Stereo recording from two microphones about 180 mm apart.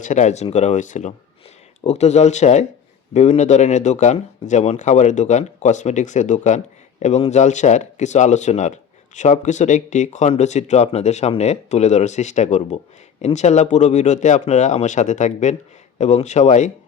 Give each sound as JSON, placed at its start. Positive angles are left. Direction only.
{"t": 0.0, "sound": "speech", "side_deg": 40}